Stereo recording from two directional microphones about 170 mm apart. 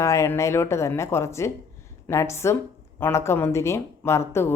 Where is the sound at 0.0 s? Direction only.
15° left (ahead or behind).